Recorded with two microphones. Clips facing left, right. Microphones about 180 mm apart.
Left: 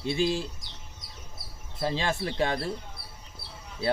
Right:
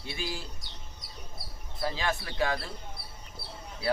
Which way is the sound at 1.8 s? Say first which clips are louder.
Left 3 dB; 25° left (ahead or behind).